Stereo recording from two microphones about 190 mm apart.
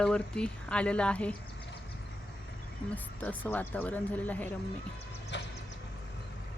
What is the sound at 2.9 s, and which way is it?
Speech, 10° left (ahead or behind).